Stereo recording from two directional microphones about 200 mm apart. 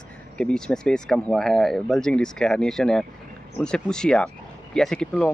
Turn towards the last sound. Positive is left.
turn(degrees=5)  # may be behind; listen again after turning